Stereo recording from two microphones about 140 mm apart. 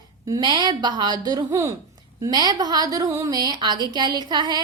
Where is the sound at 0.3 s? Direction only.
25° right (ahead or behind).